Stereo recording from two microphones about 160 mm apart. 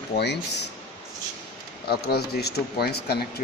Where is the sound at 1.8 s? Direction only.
80° left.